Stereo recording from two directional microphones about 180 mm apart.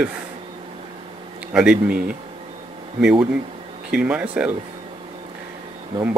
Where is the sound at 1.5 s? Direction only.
5° right (ahead or behind).